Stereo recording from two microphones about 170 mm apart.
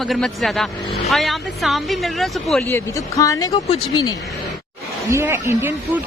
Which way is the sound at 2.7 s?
20° left (ahead or behind).